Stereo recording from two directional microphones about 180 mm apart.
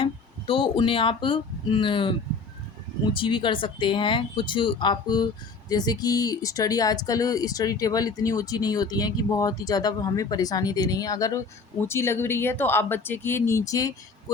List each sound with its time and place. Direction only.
0.0 s speech: 30° left (ahead or behind)